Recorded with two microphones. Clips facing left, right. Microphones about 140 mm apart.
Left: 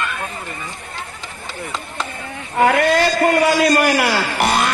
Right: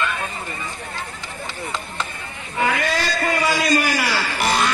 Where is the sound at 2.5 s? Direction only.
55° left (ahead or behind).